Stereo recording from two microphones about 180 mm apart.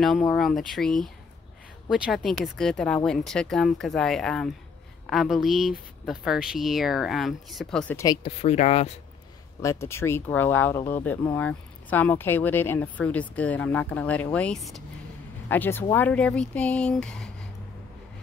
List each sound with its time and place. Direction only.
0.4 s speech: centre (ahead or behind)
7.9 s speech: 20° left (ahead or behind)
8.2 s speech: 35° left (ahead or behind)
9.6 s speech: 15° left (ahead or behind)